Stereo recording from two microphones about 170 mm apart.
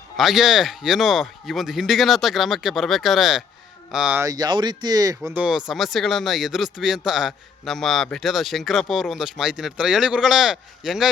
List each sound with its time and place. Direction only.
0.2 s speech: centre (ahead or behind)
4.2 s speech: 20° right (ahead or behind)
5.4 s speech: 5° right (ahead or behind)